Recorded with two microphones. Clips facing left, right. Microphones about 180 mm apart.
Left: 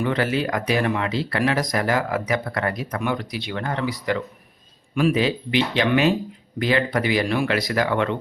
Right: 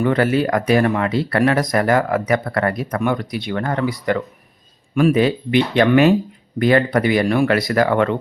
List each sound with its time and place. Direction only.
0.0 s speech: 50° right (ahead or behind)